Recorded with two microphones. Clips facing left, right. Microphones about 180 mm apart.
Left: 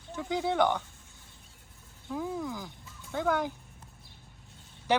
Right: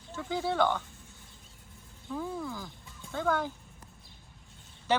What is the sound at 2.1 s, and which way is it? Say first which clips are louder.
Speech: left 2 dB; 10° left (ahead or behind).